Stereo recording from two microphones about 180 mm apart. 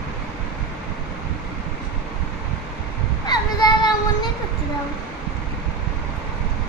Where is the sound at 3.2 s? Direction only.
25° left (ahead or behind).